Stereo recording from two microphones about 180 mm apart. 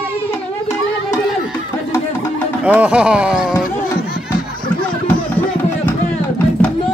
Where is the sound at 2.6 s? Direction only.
5° right (ahead or behind).